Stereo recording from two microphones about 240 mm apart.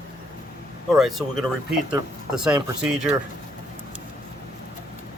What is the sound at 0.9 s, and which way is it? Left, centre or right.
Speech, centre.